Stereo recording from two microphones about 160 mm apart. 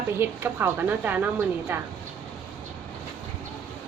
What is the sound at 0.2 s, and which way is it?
A woman's voice, 15° right (ahead or behind).